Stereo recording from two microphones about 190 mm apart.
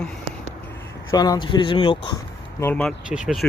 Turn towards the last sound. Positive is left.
turn(degrees=-5)  # may be behind; listen again after turning